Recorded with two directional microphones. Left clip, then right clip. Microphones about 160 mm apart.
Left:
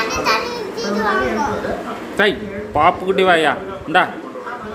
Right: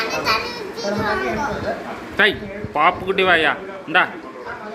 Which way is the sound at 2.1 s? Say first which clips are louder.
Even; 10° left (ahead or behind).